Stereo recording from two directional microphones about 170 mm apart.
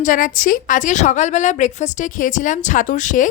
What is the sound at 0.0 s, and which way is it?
A woman's voice, 55° left (ahead or behind).